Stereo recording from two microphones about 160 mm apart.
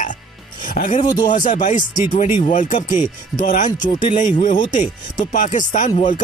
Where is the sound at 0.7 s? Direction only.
55° left (ahead or behind).